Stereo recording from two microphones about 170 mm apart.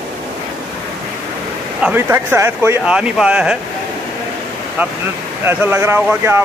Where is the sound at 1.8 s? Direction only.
10° right (ahead or behind).